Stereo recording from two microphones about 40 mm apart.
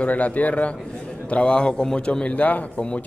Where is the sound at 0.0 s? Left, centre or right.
Left.